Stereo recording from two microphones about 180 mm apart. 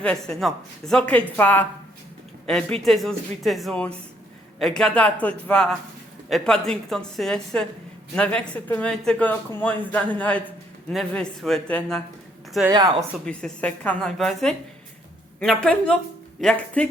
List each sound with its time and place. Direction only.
0.0 s speech: 5° left (ahead or behind)
12.6 s a woman's voice: 20° right (ahead or behind)
13.2 s speech: 5° left (ahead or behind)